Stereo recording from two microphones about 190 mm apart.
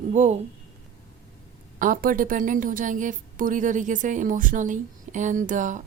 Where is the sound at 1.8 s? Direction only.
45° right (ahead or behind).